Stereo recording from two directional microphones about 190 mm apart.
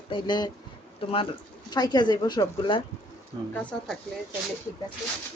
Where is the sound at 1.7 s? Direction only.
20° left (ahead or behind).